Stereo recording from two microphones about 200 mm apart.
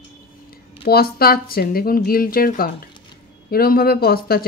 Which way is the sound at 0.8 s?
50° left (ahead or behind).